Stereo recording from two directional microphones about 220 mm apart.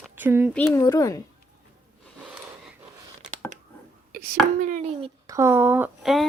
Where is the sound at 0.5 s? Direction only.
10° left (ahead or behind).